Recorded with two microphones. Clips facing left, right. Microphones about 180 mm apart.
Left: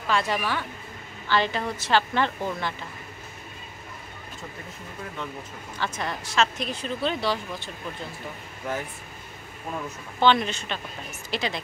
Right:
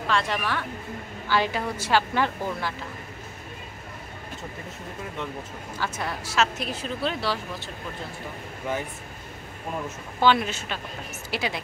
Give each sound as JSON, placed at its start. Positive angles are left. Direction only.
{"t": 0.1, "sound": "speech", "side_deg": 5}
{"t": 1.3, "sound": "a woman's voice", "side_deg": -10}
{"t": 5.8, "sound": "speech", "side_deg": -5}
{"t": 10.2, "sound": "a woman's voice", "side_deg": -5}